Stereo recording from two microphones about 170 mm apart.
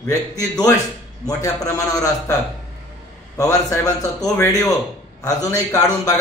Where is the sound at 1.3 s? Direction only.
20° left (ahead or behind).